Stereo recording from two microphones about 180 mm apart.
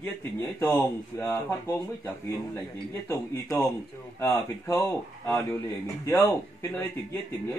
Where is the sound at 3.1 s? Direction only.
15° left (ahead or behind).